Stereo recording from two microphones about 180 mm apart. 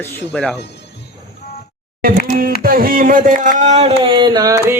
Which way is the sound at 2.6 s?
55° right (ahead or behind).